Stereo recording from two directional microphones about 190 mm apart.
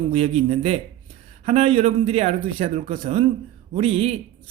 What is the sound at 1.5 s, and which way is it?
Speech, 30° right (ahead or behind).